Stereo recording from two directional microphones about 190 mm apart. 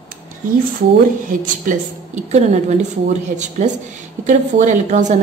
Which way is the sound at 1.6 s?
40° right (ahead or behind).